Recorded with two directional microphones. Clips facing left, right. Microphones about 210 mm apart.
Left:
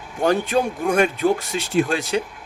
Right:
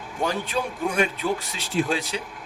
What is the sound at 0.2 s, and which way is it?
Speech, 50° left (ahead or behind).